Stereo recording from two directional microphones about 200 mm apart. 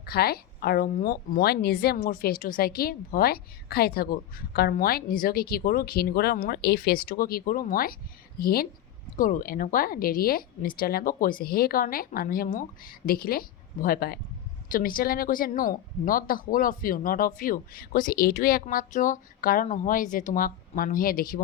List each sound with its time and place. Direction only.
0.0 s a woman's voice: 50° left (ahead or behind)